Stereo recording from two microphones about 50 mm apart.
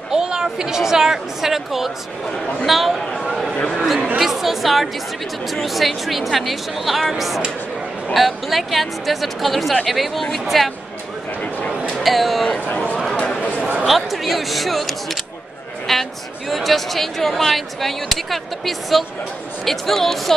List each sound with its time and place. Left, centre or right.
0.1 s a woman's voice: centre
12.0 s speech: centre
12.5 s a sound: left
13.8 s speech: centre